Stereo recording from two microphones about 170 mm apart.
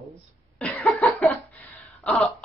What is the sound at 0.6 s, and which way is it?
Cough, 5° left (ahead or behind).